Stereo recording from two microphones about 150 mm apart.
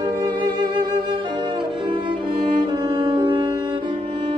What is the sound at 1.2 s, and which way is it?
Music, 30° right (ahead or behind).